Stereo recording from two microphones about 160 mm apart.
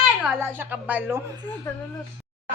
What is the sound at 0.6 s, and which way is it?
Speech, 10° right (ahead or behind).